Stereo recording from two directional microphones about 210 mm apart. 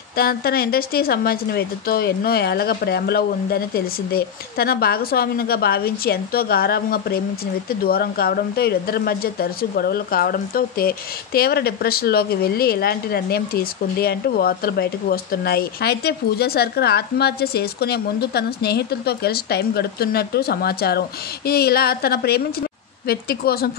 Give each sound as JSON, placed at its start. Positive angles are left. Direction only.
{"t": 0.1, "sound": "speech", "side_deg": 45}